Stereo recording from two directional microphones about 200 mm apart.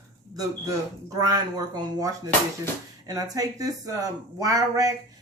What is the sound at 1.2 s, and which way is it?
Speech, 20° right (ahead or behind).